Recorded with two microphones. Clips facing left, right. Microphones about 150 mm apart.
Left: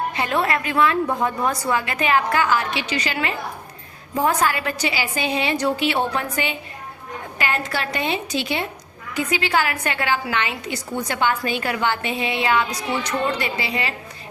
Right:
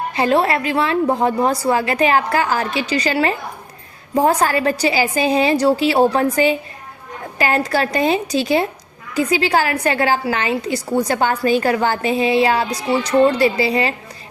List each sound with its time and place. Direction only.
0.1 s a woman's voice: 35° right (ahead or behind)